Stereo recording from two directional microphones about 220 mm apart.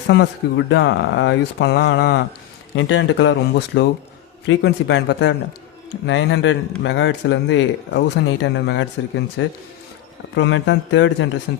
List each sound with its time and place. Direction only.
0.1 s speech: 55° left (ahead or behind)